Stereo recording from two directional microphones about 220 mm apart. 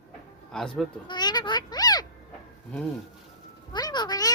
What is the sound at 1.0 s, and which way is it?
A child's voice, 20° left (ahead or behind).